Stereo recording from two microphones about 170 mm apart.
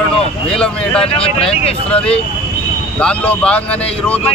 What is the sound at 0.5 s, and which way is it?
Speech, 5° left (ahead or behind).